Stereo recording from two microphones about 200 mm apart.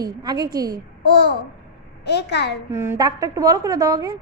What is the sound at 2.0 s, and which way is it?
Speech, 55° left (ahead or behind).